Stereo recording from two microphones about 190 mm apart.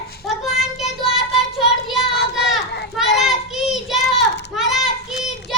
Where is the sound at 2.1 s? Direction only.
65° left (ahead or behind).